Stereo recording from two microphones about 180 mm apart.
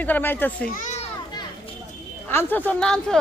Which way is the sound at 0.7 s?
45° left (ahead or behind).